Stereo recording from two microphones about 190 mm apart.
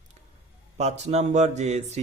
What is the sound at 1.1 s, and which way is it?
Speech, 35° right (ahead or behind).